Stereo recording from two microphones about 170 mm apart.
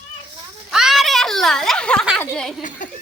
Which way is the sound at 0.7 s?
Centre (ahead or behind).